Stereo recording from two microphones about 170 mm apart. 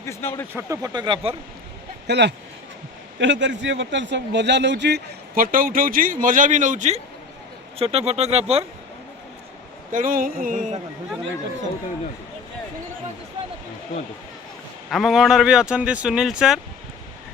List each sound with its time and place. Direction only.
0.0 s speech: 15° left (ahead or behind)
0.5 s speech: 20° right (ahead or behind)
2.0 s a man's voice: 85° right; by 8.6 s 40° right (ahead or behind)
9.9 s a sound: 55° right (ahead or behind)
14.8 s speech: centre (ahead or behind)